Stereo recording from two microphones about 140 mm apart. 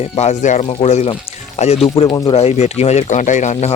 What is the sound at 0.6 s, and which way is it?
Speech, 50° left (ahead or behind).